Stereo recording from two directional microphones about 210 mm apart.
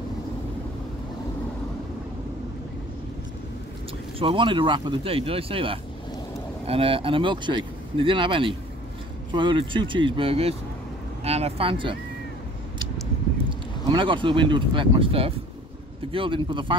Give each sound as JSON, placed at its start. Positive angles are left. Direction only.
{"t": 4.2, "sound": "speech", "side_deg": -25}
{"t": 13.8, "sound": "speech", "side_deg": -25}